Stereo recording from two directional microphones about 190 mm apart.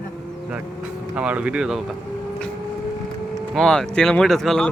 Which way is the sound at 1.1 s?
5° right (ahead or behind).